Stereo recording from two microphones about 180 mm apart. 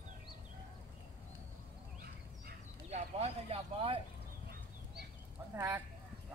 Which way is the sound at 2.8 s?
35° right (ahead or behind).